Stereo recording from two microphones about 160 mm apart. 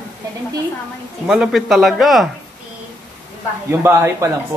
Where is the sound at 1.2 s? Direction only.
5° right (ahead or behind).